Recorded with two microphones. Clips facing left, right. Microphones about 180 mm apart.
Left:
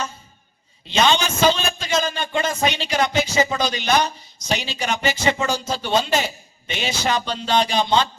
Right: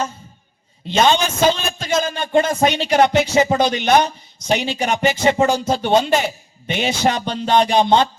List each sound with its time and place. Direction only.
0.9 s a man's voice: 50° right (ahead or behind)